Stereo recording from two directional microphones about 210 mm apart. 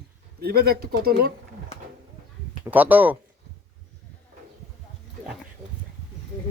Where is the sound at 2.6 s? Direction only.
10° right (ahead or behind).